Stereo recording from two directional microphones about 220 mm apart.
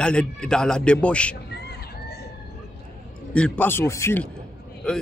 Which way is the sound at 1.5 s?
45° left (ahead or behind).